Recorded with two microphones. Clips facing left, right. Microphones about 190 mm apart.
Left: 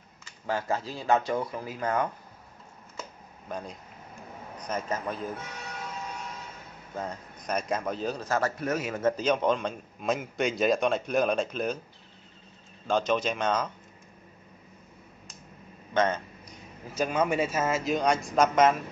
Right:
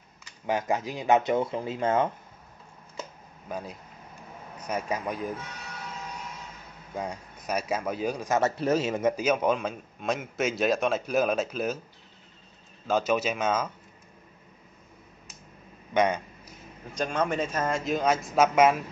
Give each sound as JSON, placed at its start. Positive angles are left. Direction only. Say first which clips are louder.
{"t": 0.5, "sound": "speech", "louder": "right 2 dB", "side_deg": -15}
{"t": 3.4, "sound": "a man's voice", "louder": "right 1 dB", "side_deg": -5}
{"t": 7.0, "sound": "a man's voice", "louder": "right 1 dB", "side_deg": -10}
{"t": 8.4, "sound": "speech", "louder": "right 6 dB", "side_deg": -25}
{"t": 9.0, "sound": "a man's voice", "louder": "right 1 dB", "side_deg": -10}
{"t": 12.8, "sound": "a man's voice", "louder": "right 1 dB", "side_deg": -5}
{"t": 15.9, "sound": "a sound", "louder": "right 2 dB", "side_deg": -10}
{"t": 16.9, "sound": "a man's voice", "louder": "left 1 dB", "side_deg": 5}